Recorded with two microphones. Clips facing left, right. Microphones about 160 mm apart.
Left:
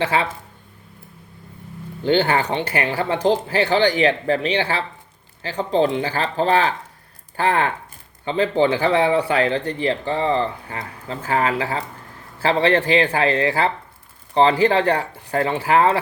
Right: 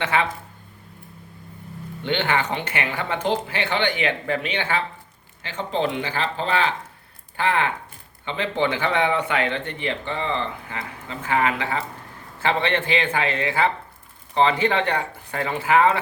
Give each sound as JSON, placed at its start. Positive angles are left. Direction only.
{"t": 0.0, "sound": "speech", "side_deg": 30}
{"t": 2.0, "sound": "speech", "side_deg": 35}